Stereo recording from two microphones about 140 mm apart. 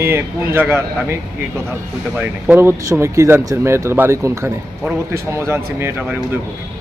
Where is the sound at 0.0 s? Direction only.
15° right (ahead or behind).